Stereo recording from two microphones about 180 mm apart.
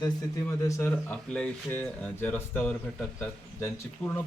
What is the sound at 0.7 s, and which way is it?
Speech, 10° left (ahead or behind).